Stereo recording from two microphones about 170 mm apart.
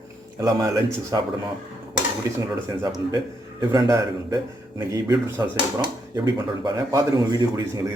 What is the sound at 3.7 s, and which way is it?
Speech, 20° right (ahead or behind).